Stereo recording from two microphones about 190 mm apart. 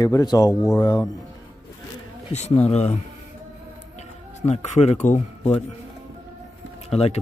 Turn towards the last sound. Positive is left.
turn(degrees=35)  # may be behind; listen again after turning